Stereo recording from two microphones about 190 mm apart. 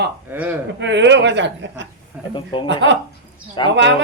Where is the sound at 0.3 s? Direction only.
10° right (ahead or behind).